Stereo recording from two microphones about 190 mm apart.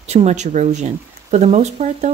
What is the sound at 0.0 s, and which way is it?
Speech, 35° right (ahead or behind).